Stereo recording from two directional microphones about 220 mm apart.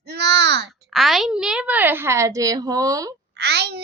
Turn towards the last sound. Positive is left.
turn(degrees=-50)  # may be behind; listen again after turning